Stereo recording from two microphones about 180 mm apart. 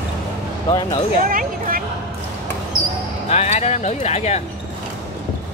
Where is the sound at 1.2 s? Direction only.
50° right (ahead or behind).